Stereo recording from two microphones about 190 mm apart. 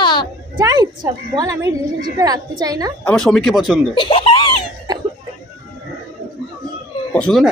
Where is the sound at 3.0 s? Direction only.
5° left (ahead or behind).